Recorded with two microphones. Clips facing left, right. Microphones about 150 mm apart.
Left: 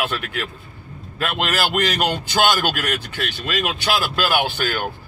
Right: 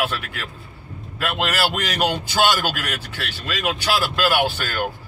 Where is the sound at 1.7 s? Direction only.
5° right (ahead or behind).